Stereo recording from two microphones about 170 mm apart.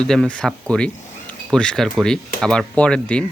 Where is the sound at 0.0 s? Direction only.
5° left (ahead or behind).